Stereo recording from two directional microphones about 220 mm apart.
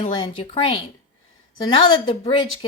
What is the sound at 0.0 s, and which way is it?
Speech, 20° left (ahead or behind).